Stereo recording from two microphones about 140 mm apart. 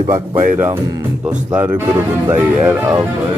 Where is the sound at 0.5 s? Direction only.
15° right (ahead or behind).